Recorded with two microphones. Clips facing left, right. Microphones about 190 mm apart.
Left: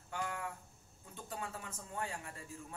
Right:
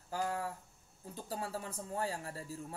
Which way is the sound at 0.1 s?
35° right (ahead or behind).